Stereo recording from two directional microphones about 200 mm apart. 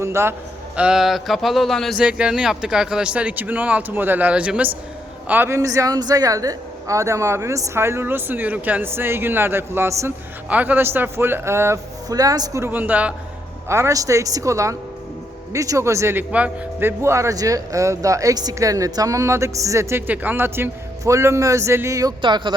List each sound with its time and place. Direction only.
0.0 s a man's voice: 15° right (ahead or behind)